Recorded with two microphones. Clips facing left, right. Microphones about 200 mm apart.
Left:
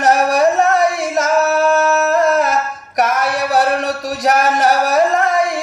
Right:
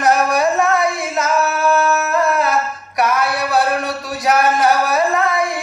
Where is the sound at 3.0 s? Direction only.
45° left (ahead or behind).